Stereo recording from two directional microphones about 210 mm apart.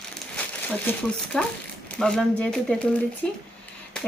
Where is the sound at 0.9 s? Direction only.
5° left (ahead or behind).